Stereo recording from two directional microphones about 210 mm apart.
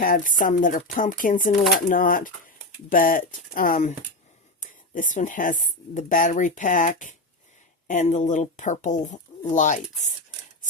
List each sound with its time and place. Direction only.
0.0 s speech: 40° left (ahead or behind)